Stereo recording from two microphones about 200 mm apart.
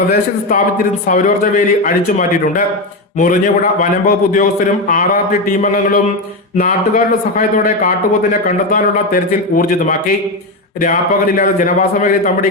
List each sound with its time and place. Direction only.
0.1 s a man's voice: 45° left (ahead or behind)